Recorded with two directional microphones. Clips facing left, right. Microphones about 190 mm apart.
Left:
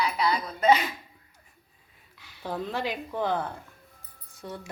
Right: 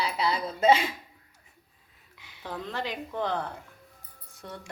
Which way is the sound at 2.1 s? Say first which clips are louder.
Even; 20° right (ahead or behind).